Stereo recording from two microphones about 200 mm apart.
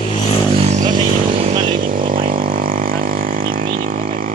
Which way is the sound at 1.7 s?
45° right (ahead or behind).